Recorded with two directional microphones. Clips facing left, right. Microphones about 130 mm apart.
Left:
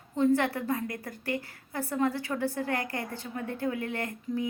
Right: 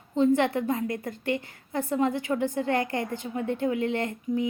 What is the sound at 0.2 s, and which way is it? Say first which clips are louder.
A woman's voice: right 3 dB; 20° right (ahead or behind).